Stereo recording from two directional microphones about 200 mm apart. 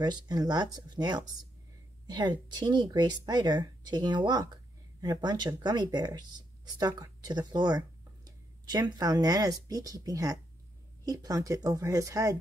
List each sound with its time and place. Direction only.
0.0 s speech: 20° right (ahead or behind)